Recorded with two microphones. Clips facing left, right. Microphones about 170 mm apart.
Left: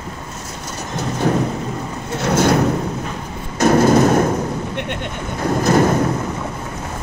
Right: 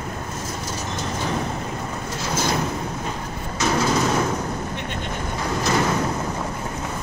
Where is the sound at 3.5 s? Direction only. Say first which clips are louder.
Left 9 dB; 50° left (ahead or behind).